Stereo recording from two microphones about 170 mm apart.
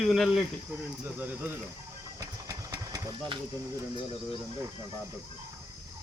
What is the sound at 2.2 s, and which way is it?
Engine, 20° right (ahead or behind).